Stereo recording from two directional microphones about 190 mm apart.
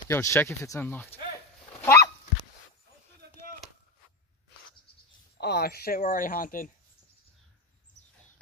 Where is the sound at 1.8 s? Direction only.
15° left (ahead or behind).